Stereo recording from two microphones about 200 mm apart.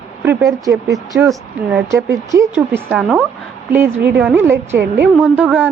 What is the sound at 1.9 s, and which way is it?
A woman's voice, 15° right (ahead or behind).